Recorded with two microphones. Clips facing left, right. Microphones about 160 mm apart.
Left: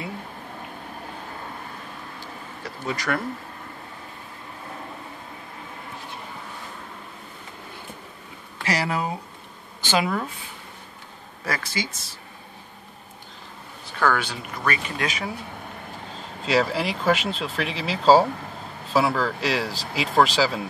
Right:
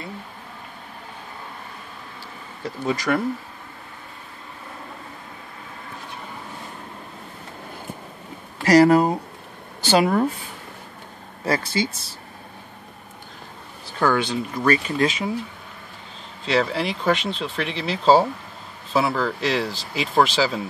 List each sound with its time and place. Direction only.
2.6 s speech: 25° right (ahead or behind)
8.6 s speech: 40° right (ahead or behind)
11.4 s speech: 30° right (ahead or behind)
13.9 s speech: 25° right (ahead or behind)
16.4 s speech: centre (ahead or behind)